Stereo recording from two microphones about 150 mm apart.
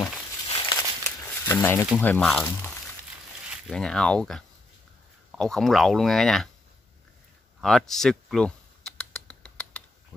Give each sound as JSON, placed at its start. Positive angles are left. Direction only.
{"t": 0.5, "sound": "a sound", "side_deg": 30}
{"t": 1.4, "sound": "speech", "side_deg": 15}
{"t": 7.6, "sound": "computer keyboard", "side_deg": 5}